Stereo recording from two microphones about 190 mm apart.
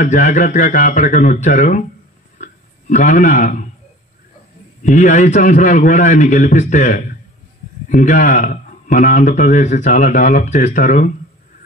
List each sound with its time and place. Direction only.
0.0 s a man's voice: 45° left (ahead or behind)
2.3 s a sound: 40° left (ahead or behind)
4.8 s a man's voice: 40° left (ahead or behind)